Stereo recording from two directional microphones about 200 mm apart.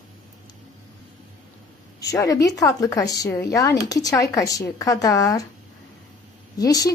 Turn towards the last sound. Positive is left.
turn(degrees=20)  # may be behind; listen again after turning